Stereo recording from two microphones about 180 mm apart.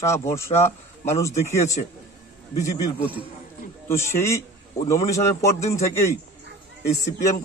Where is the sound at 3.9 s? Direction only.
15° left (ahead or behind).